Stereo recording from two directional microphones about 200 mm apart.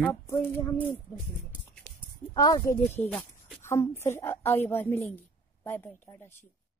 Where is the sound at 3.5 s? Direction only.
15° left (ahead or behind).